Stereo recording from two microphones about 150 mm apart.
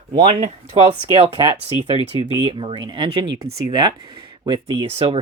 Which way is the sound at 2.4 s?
35° right (ahead or behind).